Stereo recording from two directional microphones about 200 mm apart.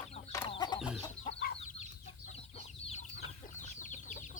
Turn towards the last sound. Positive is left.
turn(degrees=40)  # may be behind; listen again after turning